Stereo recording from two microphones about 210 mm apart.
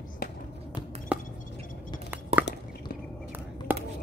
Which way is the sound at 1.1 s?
5° right (ahead or behind).